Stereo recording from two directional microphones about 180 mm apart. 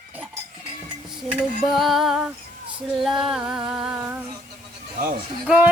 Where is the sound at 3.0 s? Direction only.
Centre (ahead or behind).